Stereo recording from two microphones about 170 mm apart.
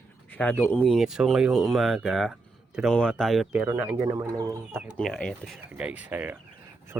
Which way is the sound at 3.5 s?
10° right (ahead or behind).